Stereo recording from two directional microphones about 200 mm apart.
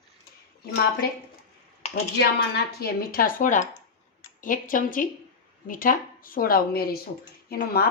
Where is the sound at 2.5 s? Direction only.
50° left (ahead or behind).